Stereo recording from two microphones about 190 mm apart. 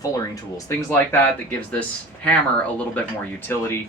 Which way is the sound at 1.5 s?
5° left (ahead or behind).